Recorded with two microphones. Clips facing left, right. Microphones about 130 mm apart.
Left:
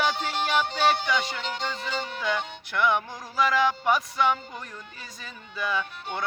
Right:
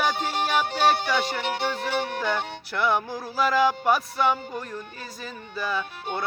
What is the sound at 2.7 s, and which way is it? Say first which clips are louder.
Music: even; 35° right (ahead or behind).